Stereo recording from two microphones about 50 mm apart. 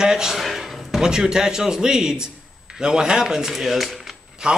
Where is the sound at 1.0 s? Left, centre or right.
Centre.